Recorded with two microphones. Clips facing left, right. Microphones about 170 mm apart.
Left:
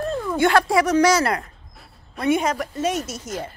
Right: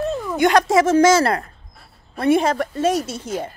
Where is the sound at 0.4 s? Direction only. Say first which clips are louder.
Right 3 dB; 20° right (ahead or behind).